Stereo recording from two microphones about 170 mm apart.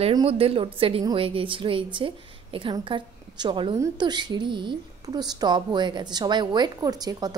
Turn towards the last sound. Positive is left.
turn(degrees=-20)  # may be behind; listen again after turning